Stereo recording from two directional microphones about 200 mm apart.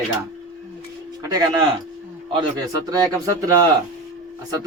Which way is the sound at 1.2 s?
20° right (ahead or behind).